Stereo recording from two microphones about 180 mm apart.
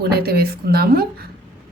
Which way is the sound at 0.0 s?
60° right (ahead or behind).